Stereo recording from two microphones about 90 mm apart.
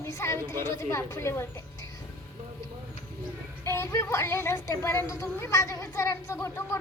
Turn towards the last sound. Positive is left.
turn(degrees=30)  # may be behind; listen again after turning